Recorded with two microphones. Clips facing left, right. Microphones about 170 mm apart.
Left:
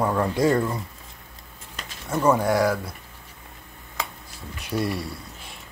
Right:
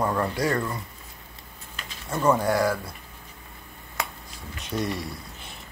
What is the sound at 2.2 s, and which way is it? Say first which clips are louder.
Speech: left 2 dB; 10° left (ahead or behind).